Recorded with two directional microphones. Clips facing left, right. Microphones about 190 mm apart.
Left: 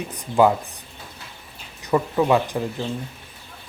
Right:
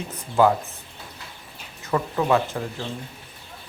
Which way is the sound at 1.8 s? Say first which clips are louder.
Left 3 dB; 15° left (ahead or behind).